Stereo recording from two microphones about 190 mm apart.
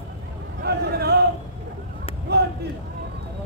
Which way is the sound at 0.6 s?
55° right (ahead or behind).